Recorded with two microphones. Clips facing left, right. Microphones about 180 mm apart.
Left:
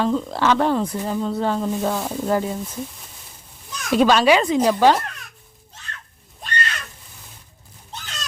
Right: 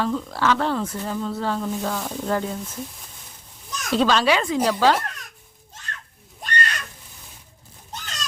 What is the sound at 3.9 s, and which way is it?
Speech, 15° left (ahead or behind).